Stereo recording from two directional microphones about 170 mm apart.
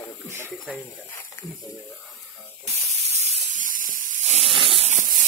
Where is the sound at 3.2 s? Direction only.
45° right (ahead or behind).